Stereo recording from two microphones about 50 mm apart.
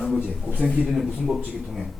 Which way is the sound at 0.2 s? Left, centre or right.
Right.